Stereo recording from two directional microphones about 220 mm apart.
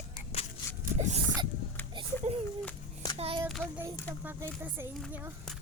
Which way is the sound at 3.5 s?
Centre (ahead or behind).